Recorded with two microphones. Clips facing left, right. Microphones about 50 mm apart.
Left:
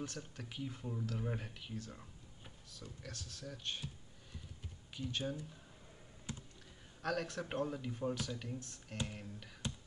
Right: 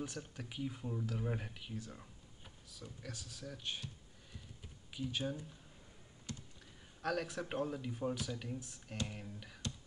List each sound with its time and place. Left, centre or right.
0.0 s speech: centre
4.9 s speech: centre
6.3 s computer keyboard: centre
7.0 s speech: centre